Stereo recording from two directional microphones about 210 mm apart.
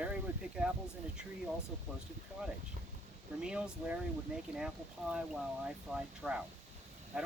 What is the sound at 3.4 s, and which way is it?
Speech, 5° right (ahead or behind).